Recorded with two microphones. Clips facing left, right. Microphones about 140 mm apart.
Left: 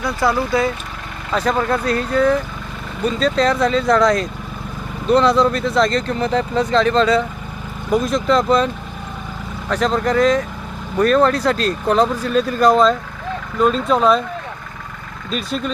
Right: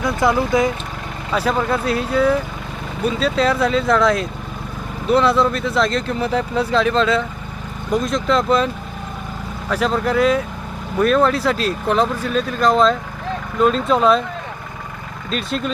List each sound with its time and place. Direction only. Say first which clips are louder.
0.0 s speech: right 1 dB; 20° right (ahead or behind)
1.4 s speech: left 1 dB; 5° right (ahead or behind)
15.3 s speech: even; centre (ahead or behind)